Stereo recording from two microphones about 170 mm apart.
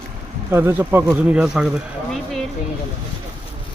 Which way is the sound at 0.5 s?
15° right (ahead or behind).